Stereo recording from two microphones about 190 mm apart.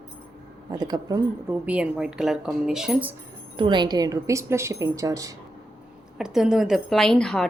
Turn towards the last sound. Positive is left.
turn(degrees=5)  # may be behind; listen again after turning